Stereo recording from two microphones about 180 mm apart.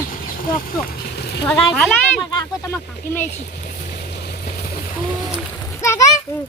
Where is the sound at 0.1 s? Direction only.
55° left (ahead or behind).